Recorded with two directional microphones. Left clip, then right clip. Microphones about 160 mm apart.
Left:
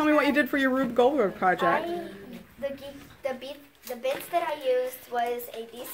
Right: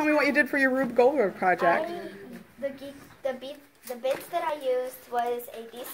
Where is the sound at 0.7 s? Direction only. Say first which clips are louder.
Even; 15° left (ahead or behind).